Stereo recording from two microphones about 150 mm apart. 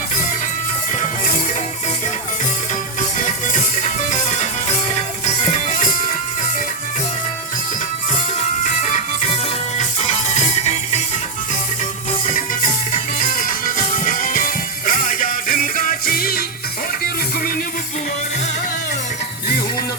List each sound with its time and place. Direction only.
0.9 s music: 60° left (ahead or behind)
3.2 s music: 60° left (ahead or behind)
8.1 s music: 55° left (ahead or behind)
12.2 s music: 60° left (ahead or behind); by 16.4 s 80° left